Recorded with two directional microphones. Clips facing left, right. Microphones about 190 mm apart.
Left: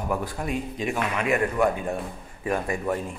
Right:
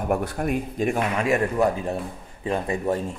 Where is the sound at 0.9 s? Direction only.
30° right (ahead or behind).